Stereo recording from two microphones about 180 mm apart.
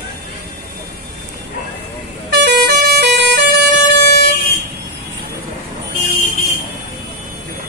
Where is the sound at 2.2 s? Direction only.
65° right (ahead or behind).